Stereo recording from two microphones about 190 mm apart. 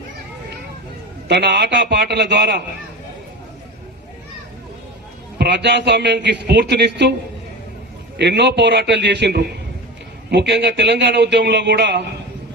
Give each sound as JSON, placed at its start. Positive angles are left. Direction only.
{"t": 1.3, "sound": "a man's voice", "side_deg": -60}
{"t": 5.4, "sound": "a man's voice", "side_deg": -65}
{"t": 8.1, "sound": "a man's voice", "side_deg": -65}